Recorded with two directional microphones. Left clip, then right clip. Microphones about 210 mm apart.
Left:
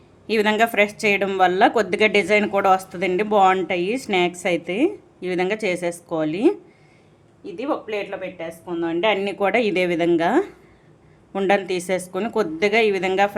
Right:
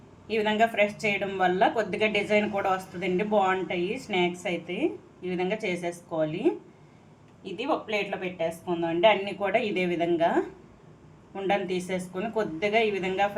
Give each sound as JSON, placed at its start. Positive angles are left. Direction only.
{"t": 0.3, "sound": "speech", "side_deg": 55}
{"t": 8.4, "sound": "speech", "side_deg": 40}